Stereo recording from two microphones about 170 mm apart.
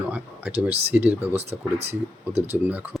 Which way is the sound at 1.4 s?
40° right (ahead or behind).